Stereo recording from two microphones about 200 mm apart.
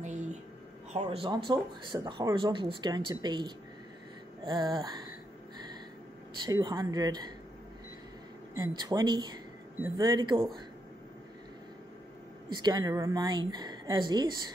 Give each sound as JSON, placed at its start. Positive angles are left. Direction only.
{"t": 0.0, "sound": "a sound", "side_deg": -35}
{"t": 0.9, "sound": "speech", "side_deg": -30}
{"t": 6.4, "sound": "speech", "side_deg": -20}
{"t": 8.5, "sound": "speech", "side_deg": -20}
{"t": 12.4, "sound": "speech", "side_deg": -20}